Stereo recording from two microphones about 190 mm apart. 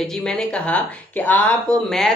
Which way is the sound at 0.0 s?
5° left (ahead or behind).